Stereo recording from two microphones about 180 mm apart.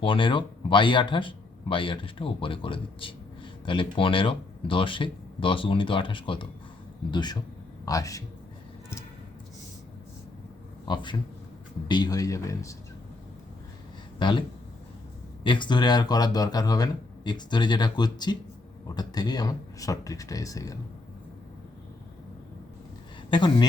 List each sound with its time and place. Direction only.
0.0 s speech: 30° left (ahead or behind)
10.8 s speech: 25° left (ahead or behind)
14.2 s speech: 25° left (ahead or behind)
15.4 s speech: 25° left (ahead or behind)
23.3 s speech: 25° left (ahead or behind)